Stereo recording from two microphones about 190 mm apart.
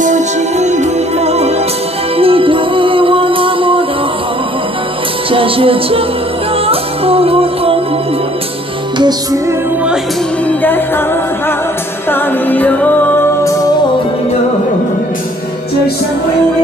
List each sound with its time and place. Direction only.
0.0 s music: 40° right (ahead or behind)
5.3 s music: 30° right (ahead or behind)
8.9 s music: 20° right (ahead or behind)
12.1 s music: 10° left (ahead or behind)